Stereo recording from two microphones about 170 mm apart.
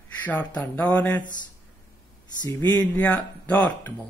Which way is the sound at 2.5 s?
10° left (ahead or behind).